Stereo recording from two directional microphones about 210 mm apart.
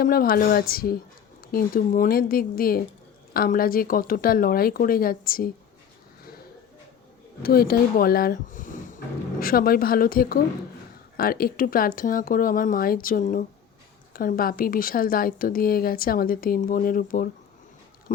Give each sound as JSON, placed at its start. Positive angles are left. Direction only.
{"t": 0.0, "sound": "speech", "side_deg": 45}
{"t": 7.4, "sound": "speech", "side_deg": 45}